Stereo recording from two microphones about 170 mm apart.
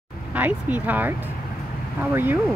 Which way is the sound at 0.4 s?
10° right (ahead or behind).